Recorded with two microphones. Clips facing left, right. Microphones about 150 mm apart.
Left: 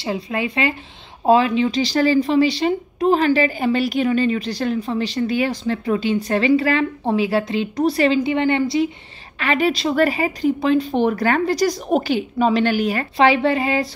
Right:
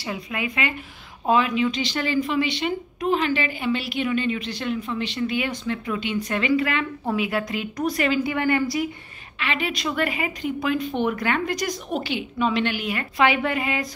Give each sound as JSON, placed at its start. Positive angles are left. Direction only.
{"t": 0.0, "sound": "speech", "side_deg": 30}
{"t": 9.4, "sound": "speech", "side_deg": 40}